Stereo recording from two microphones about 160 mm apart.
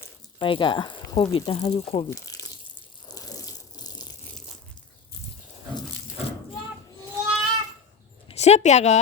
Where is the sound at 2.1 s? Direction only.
20° left (ahead or behind).